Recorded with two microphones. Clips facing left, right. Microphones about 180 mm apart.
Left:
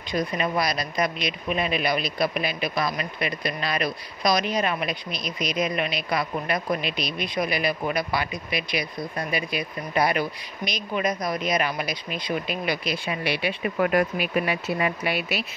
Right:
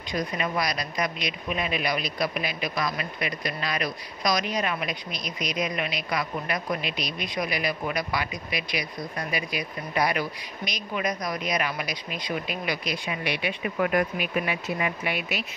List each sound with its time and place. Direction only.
0.4 s speech: 30° left (ahead or behind)